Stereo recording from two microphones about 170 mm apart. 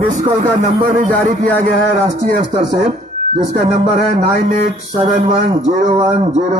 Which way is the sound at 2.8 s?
40° right (ahead or behind).